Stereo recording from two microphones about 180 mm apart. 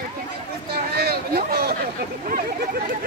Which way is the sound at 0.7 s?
60° right (ahead or behind).